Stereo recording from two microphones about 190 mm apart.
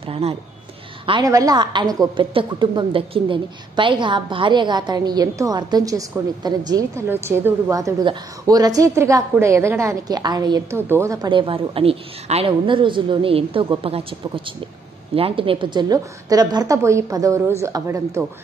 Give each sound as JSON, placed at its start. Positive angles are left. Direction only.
{"t": 0.1, "sound": "a woman's voice", "side_deg": -30}